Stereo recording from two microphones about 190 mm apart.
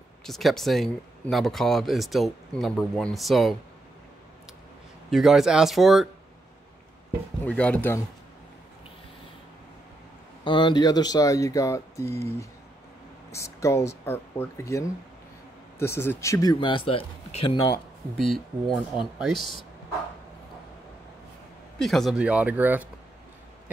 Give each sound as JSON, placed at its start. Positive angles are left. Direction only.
{"t": 0.2, "sound": "speech", "side_deg": 0}
{"t": 5.1, "sound": "speech", "side_deg": 0}
{"t": 7.4, "sound": "speech", "side_deg": 5}
{"t": 10.4, "sound": "speech", "side_deg": 25}
{"t": 13.3, "sound": "speech", "side_deg": 15}
{"t": 18.1, "sound": "speech", "side_deg": 0}
{"t": 21.7, "sound": "speech", "side_deg": 0}